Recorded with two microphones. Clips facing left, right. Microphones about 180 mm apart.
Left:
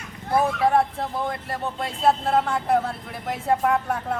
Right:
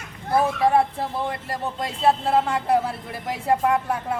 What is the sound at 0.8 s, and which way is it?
Speech, 5° right (ahead or behind).